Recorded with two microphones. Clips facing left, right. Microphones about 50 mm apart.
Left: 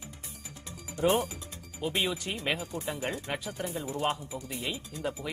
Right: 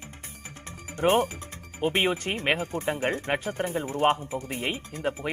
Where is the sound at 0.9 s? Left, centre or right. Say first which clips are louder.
Right 4 dB; right.